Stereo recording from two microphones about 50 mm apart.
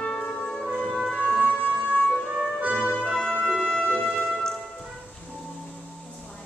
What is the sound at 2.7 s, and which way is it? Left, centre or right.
Music, right.